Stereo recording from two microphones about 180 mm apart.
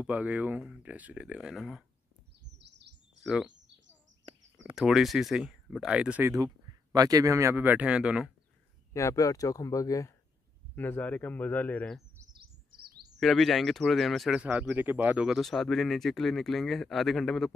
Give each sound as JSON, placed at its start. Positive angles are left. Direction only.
{"t": 0.0, "sound": "speech", "side_deg": -10}
{"t": 3.3, "sound": "speech", "side_deg": 0}
{"t": 4.3, "sound": "a sound", "side_deg": -30}
{"t": 4.7, "sound": "speech", "side_deg": 0}
{"t": 6.3, "sound": "speech", "side_deg": -20}
{"t": 8.9, "sound": "speech", "side_deg": 20}
{"t": 12.7, "sound": "bird", "side_deg": -60}
{"t": 13.2, "sound": "speech", "side_deg": 0}